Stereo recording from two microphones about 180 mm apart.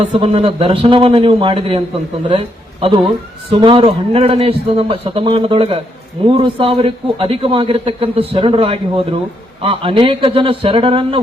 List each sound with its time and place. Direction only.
0.0 s speech: 35° right (ahead or behind)
2.8 s a man's voice: 30° right (ahead or behind)